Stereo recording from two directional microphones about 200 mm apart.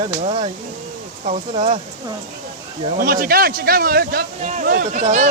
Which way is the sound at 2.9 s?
45° right (ahead or behind).